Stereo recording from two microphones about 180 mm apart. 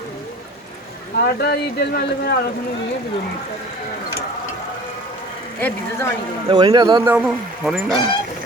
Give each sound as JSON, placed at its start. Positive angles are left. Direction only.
{"t": 1.1, "sound": "speech", "side_deg": 65}
{"t": 5.5, "sound": "speech", "side_deg": 10}
{"t": 6.5, "sound": "speech", "side_deg": -20}
{"t": 7.1, "sound": "speech", "side_deg": -5}